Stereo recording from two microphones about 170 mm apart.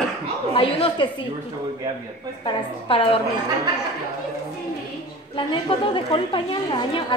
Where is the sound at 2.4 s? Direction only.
30° left (ahead or behind).